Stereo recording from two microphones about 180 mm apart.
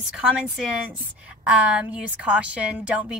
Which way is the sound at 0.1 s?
5° right (ahead or behind).